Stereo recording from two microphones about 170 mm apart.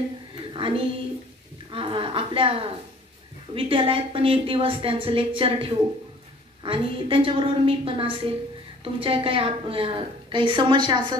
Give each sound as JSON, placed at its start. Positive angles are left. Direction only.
{"t": 0.5, "sound": "a woman's voice", "side_deg": -30}